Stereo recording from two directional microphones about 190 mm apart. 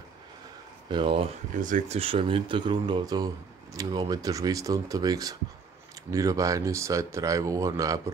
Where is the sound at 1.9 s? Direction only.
30° right (ahead or behind).